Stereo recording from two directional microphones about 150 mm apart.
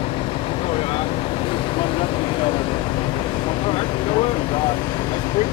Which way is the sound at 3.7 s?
35° left (ahead or behind).